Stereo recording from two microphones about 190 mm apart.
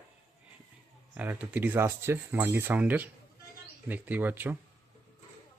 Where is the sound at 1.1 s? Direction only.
10° right (ahead or behind).